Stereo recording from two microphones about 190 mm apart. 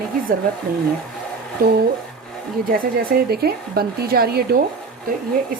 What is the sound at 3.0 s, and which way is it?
Speech, 50° right (ahead or behind).